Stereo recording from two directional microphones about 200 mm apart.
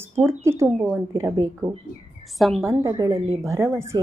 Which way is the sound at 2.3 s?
Centre (ahead or behind).